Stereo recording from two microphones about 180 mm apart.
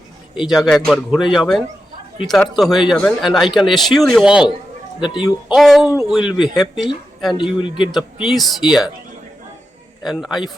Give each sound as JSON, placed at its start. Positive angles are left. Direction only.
{"t": 0.4, "sound": "speech", "side_deg": 0}
{"t": 4.9, "sound": "a man's voice", "side_deg": 25}
{"t": 5.2, "sound": "speech", "side_deg": 0}
{"t": 7.3, "sound": "a man's voice", "side_deg": 25}
{"t": 7.9, "sound": "speech", "side_deg": 0}
{"t": 10.0, "sound": "speech", "side_deg": 0}